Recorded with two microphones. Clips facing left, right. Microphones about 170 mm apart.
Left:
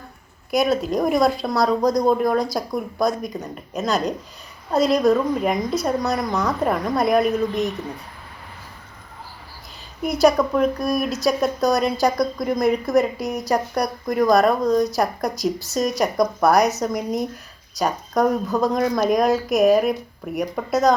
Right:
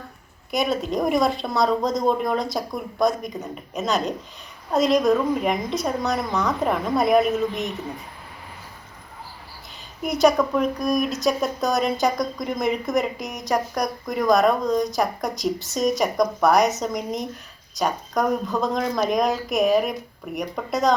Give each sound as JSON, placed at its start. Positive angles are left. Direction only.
{"t": 0.5, "sound": "speech", "side_deg": 0}
{"t": 10.0, "sound": "speech", "side_deg": 0}
{"t": 13.1, "sound": "a woman's voice", "side_deg": 35}
{"t": 13.5, "sound": "speech", "side_deg": 5}